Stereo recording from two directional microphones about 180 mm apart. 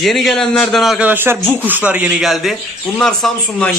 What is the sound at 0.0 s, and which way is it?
A man's voice, centre (ahead or behind).